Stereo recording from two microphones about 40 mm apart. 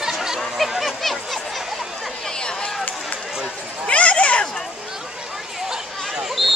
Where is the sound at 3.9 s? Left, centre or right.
Left.